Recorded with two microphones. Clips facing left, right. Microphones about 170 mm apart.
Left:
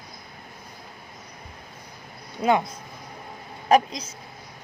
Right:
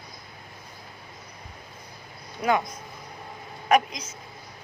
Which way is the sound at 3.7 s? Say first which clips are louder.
Left 2 dB; 35° left (ahead or behind).